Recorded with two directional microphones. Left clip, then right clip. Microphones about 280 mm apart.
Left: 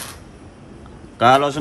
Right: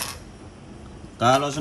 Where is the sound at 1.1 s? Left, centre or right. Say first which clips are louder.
Left 6 dB; centre.